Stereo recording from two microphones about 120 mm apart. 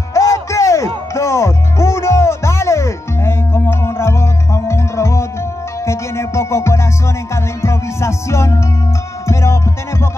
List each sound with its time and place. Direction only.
0.1 s music: 25° left (ahead or behind)